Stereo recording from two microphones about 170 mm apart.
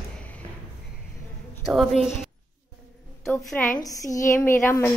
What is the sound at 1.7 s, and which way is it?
Speech, centre (ahead or behind).